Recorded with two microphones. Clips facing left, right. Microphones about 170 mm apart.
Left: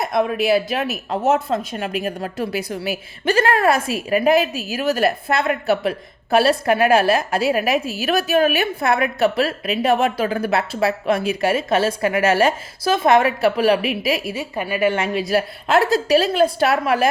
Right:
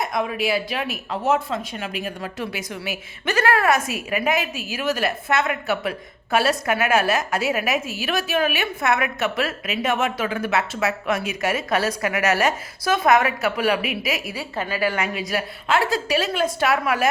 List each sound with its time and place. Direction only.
0.0 s a woman's voice: 40° left (ahead or behind)
14.5 s a woman's voice: 15° left (ahead or behind)
15.3 s a woman's voice: 40° left (ahead or behind)